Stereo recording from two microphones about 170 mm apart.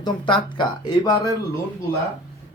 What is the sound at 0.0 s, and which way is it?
Speech, 25° left (ahead or behind).